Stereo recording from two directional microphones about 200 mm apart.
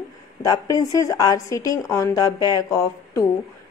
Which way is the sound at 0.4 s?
15° left (ahead or behind).